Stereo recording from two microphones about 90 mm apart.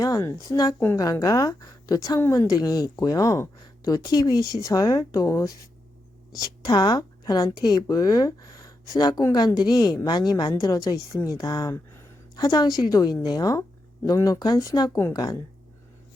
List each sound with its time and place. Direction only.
0.0 s a woman's voice: 35° left (ahead or behind)